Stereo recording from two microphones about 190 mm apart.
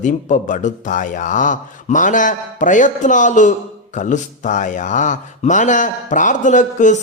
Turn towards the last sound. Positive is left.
turn(degrees=40)  # may be behind; listen again after turning